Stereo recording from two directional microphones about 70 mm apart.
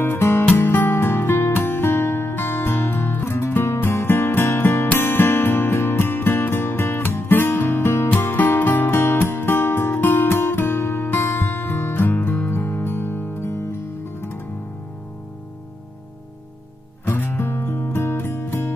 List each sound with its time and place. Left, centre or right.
0.0 s music: left
17.0 s music: left